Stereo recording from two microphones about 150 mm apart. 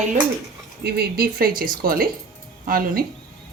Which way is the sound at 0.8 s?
90° right.